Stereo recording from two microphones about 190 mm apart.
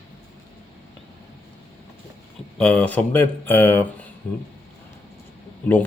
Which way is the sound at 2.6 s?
5° left (ahead or behind).